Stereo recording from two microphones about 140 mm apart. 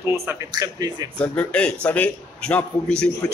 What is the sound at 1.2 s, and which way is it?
A man's voice, 10° left (ahead or behind).